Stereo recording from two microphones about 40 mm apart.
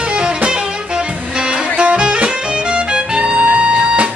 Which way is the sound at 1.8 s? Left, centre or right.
Right.